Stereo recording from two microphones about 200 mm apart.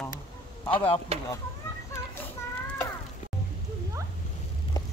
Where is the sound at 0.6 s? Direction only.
25° left (ahead or behind).